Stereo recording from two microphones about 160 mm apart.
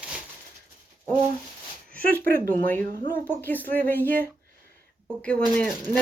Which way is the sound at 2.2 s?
65° right (ahead or behind).